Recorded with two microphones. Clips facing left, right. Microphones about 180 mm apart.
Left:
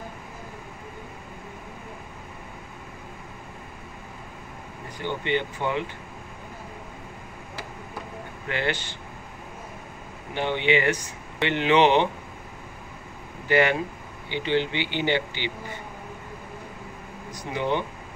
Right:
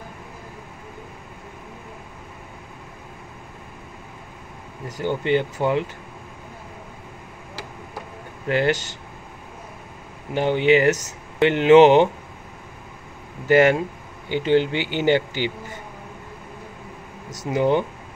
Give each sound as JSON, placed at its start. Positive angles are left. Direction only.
{"t": 4.8, "sound": "speech", "side_deg": -40}
{"t": 8.5, "sound": "speech", "side_deg": -40}
{"t": 10.3, "sound": "speech", "side_deg": -40}
{"t": 13.5, "sound": "speech", "side_deg": -45}
{"t": 17.3, "sound": "speech", "side_deg": -45}